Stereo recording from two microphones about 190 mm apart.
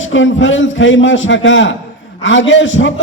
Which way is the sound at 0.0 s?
85° left.